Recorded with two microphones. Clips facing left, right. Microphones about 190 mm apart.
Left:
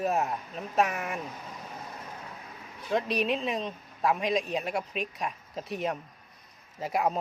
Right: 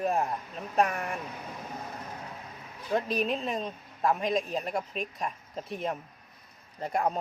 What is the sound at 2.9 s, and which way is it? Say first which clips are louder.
Speech: left 1 dB; centre (ahead or behind).